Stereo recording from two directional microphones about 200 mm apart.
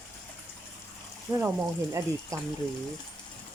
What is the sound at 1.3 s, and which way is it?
Speech, 15° right (ahead or behind).